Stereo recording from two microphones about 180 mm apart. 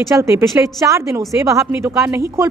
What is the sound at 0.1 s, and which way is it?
A woman's voice, 15° right (ahead or behind).